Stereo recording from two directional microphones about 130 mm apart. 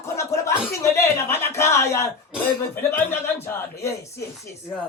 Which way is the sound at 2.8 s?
20° left (ahead or behind).